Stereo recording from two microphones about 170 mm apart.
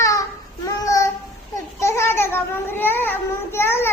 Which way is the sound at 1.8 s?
15° left (ahead or behind).